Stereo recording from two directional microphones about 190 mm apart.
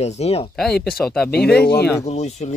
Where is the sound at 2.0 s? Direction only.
35° left (ahead or behind).